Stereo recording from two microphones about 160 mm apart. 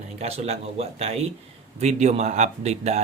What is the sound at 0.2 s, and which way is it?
Speech, 40° right (ahead or behind).